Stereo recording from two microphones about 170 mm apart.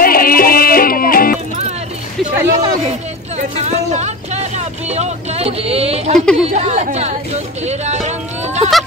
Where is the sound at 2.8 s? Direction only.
40° right (ahead or behind).